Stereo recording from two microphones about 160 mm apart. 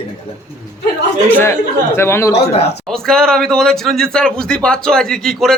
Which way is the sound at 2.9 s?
5° left (ahead or behind).